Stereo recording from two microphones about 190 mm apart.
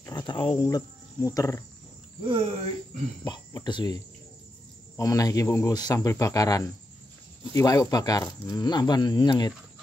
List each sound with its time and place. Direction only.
0.0 s speech: 25° left (ahead or behind)
2.2 s speech: 30° right (ahead or behind)
3.3 s speech: 25° left (ahead or behind)